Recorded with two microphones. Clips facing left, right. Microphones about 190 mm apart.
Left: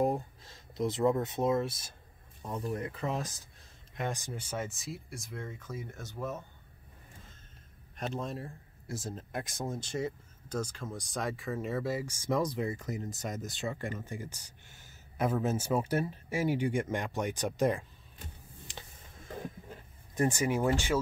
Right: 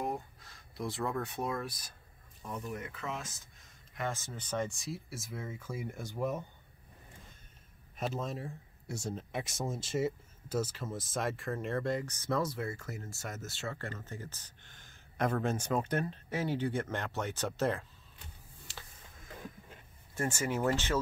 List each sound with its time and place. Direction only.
0.0 s speech: 30° left (ahead or behind)
3.9 s speech: 15° left (ahead or behind); by 6.4 s 15° right (ahead or behind)
7.9 s speech: 5° right (ahead or behind); by 17.8 s 15° left (ahead or behind)
18.7 s a sound: 15° left (ahead or behind)
20.2 s speech: 15° left (ahead or behind)